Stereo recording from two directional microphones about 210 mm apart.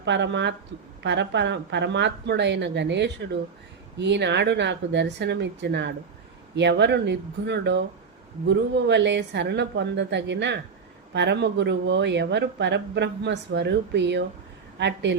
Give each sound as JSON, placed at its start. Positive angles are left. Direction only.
{"t": 0.0, "sound": "speech", "side_deg": -60}